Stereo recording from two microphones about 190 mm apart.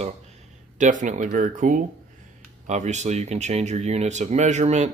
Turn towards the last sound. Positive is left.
turn(degrees=-35)  # may be behind; listen again after turning